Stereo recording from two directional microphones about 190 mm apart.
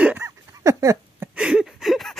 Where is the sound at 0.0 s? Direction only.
10° right (ahead or behind).